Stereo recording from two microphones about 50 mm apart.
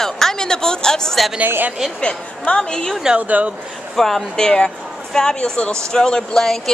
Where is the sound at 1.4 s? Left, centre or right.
Right.